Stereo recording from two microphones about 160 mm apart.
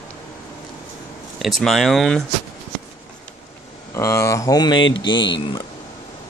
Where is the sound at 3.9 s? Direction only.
15° left (ahead or behind).